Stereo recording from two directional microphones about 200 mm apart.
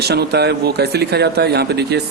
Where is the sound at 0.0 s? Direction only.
55° right (ahead or behind).